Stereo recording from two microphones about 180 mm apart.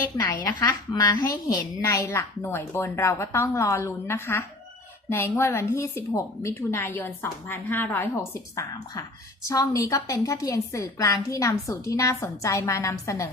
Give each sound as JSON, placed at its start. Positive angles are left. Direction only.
{"t": 0.4, "sound": "a woman's voice", "side_deg": 20}